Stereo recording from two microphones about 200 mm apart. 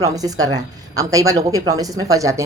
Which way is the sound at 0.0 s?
15° right (ahead or behind).